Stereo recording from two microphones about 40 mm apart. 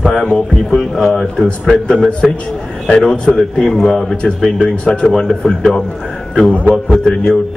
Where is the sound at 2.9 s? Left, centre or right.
Left.